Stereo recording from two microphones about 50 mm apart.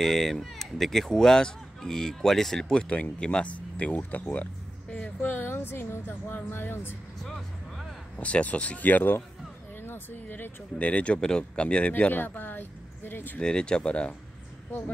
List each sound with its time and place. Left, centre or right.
0.0 s speech: centre
2.9 s speech: left
7.2 s vehicle: centre
8.2 s speech: left
9.8 s a sound: left
10.8 s speech: left
11.1 s speech: centre
12.1 s speech: left
13.4 s speech: centre